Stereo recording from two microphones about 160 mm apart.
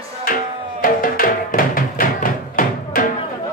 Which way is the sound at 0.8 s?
60° left (ahead or behind).